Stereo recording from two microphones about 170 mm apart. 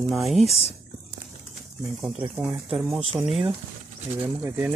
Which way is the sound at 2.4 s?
5° right (ahead or behind).